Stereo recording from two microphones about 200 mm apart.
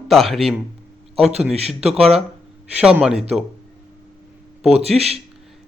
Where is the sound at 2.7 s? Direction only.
5° right (ahead or behind).